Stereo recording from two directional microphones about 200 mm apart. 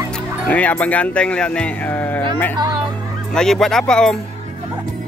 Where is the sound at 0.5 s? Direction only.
5° left (ahead or behind).